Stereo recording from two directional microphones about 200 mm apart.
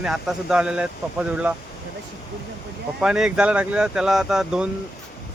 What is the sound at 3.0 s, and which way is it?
Speech, 5° right (ahead or behind).